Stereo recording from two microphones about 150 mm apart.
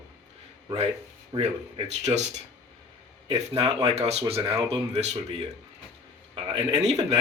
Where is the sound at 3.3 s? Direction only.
40° right (ahead or behind).